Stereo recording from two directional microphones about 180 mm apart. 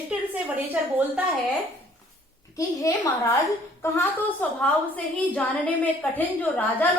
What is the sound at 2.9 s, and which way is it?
A woman's voice, 20° left (ahead or behind).